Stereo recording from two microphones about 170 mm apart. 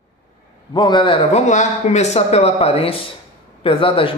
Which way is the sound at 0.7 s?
25° left (ahead or behind).